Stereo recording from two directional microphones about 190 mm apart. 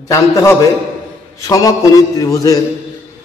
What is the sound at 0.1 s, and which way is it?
Speech, 15° left (ahead or behind).